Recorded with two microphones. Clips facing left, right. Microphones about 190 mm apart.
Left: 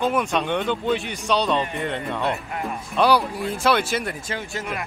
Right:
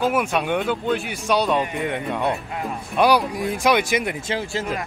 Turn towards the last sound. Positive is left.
turn(degrees=-35)  # may be behind; listen again after turning